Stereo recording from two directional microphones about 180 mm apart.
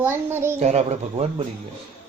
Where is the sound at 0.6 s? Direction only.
40° right (ahead or behind).